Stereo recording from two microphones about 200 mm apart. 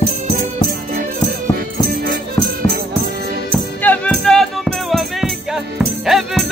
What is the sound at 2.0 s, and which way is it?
Music, 50° right (ahead or behind).